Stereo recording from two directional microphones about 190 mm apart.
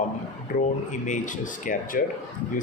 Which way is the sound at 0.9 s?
40° left (ahead or behind).